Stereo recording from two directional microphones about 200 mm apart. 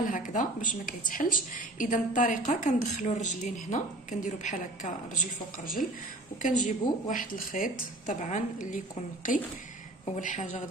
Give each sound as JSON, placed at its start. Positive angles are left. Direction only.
{"t": 0.1, "sound": "speech", "side_deg": 40}